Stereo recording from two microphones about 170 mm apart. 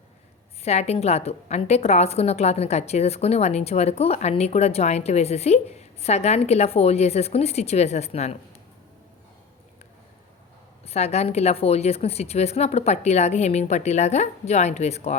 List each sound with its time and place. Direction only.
0.6 s a woman's voice: 40° left (ahead or behind)
10.8 s a woman's voice: 40° left (ahead or behind)